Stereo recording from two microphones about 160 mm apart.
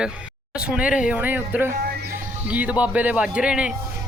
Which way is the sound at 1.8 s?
75° right (ahead or behind).